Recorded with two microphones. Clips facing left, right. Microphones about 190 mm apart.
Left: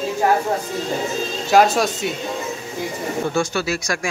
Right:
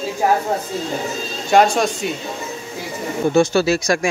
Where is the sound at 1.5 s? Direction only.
5° left (ahead or behind).